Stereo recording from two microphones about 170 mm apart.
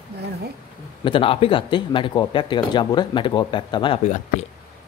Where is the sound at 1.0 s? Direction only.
30° left (ahead or behind).